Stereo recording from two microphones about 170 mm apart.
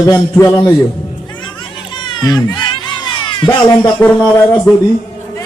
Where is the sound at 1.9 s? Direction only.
25° left (ahead or behind).